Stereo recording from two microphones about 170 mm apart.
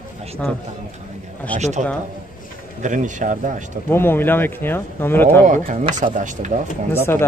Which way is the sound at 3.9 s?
10° left (ahead or behind).